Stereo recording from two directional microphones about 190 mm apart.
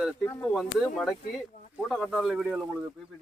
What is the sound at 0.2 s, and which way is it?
Speech, 15° left (ahead or behind).